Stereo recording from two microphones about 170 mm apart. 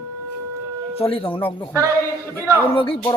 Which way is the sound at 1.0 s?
35° left (ahead or behind).